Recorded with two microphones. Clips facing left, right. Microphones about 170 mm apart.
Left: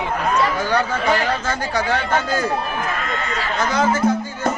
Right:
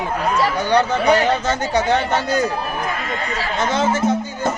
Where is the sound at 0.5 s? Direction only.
20° right (ahead or behind).